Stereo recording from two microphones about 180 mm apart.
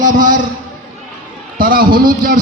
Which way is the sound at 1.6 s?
50° right (ahead or behind).